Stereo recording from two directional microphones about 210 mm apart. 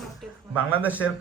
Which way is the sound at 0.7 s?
10° right (ahead or behind).